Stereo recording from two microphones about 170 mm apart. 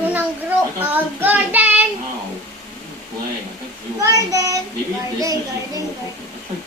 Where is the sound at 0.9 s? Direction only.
10° right (ahead or behind).